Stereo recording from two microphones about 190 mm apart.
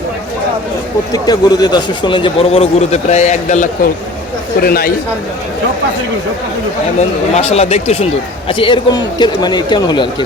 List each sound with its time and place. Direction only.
1.1 s a man's voice: 20° left (ahead or behind); by 3.7 s 40° left (ahead or behind)
4.6 s speech: 50° left (ahead or behind)
7.3 s a man's voice: 35° left (ahead or behind)